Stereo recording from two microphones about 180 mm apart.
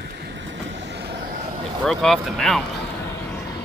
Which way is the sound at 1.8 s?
Centre (ahead or behind).